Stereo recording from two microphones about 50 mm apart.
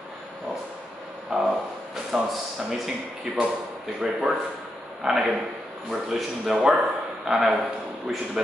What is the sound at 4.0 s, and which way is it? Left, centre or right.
A man's voice, centre.